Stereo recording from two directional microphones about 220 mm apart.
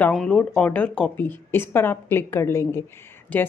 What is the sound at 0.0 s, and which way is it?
Speech, 5° left (ahead or behind).